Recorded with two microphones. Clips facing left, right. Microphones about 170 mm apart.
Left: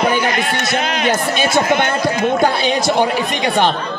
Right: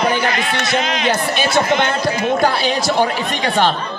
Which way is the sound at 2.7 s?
20° left (ahead or behind).